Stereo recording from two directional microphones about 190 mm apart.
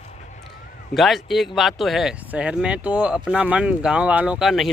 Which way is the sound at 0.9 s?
Centre (ahead or behind).